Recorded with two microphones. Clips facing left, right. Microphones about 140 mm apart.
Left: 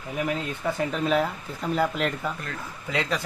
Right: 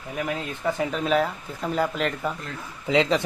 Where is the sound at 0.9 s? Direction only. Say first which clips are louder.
Even; centre (ahead or behind).